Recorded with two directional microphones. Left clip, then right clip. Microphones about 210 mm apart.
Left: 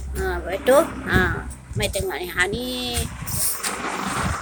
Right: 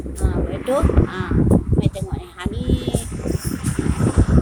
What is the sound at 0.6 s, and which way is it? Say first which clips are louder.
Speech: left 3 dB; 10° left (ahead or behind).